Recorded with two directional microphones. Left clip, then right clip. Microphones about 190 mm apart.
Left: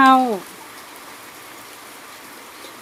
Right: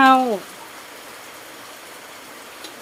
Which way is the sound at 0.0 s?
5° left (ahead or behind).